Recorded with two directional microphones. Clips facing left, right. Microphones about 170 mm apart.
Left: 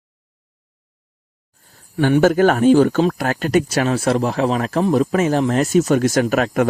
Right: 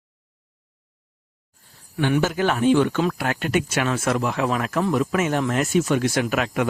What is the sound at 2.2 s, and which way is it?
Speech, 45° left (ahead or behind).